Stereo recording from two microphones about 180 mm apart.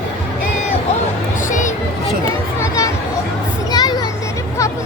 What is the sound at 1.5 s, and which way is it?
Music, 45° left (ahead or behind).